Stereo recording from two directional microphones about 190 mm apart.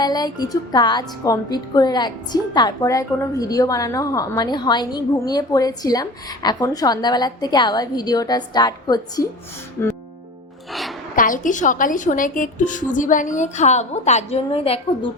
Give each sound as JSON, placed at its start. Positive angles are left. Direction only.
{"t": 0.0, "sound": "a woman's voice", "side_deg": 20}
{"t": 10.7, "sound": "music", "side_deg": 0}
{"t": 11.1, "sound": "a woman's voice", "side_deg": 45}